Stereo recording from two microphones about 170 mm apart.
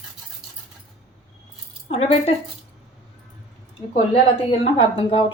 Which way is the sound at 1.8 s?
35° left (ahead or behind).